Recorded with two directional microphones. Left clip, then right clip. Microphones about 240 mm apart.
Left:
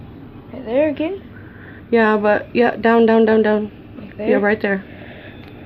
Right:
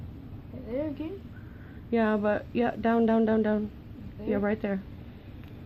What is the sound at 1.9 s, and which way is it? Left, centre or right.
Speech, centre.